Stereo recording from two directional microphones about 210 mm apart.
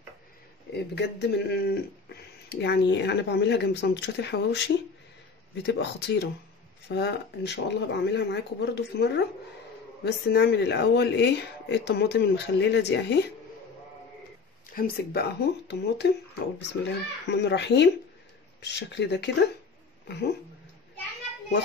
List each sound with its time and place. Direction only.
0.7 s speech: 55° left (ahead or behind)
14.7 s speech: 45° left (ahead or behind)
15.7 s speech: 55° left (ahead or behind)